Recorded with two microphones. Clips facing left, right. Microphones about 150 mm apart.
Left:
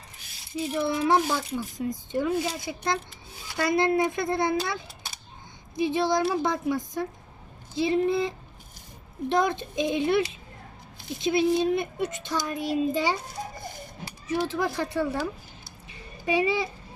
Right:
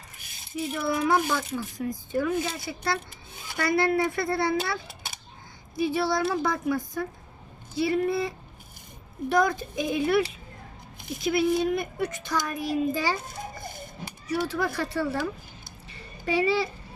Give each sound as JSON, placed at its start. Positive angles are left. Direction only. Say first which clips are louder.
{"t": 0.5, "sound": "a child's voice", "louder": "left 1 dB", "side_deg": 25}
{"t": 5.7, "sound": "a child's voice", "louder": "left 1 dB", "side_deg": 20}
{"t": 9.3, "sound": "a child's voice", "louder": "right 1 dB", "side_deg": 25}
{"t": 14.3, "sound": "a child's voice", "louder": "left 1 dB", "side_deg": 20}
{"t": 15.9, "sound": "a sound", "louder": "left 1 dB", "side_deg": 15}